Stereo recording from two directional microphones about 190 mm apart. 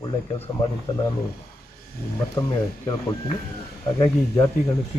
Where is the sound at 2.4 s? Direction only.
25° left (ahead or behind).